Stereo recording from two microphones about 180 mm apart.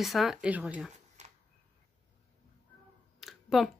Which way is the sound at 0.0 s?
Centre (ahead or behind).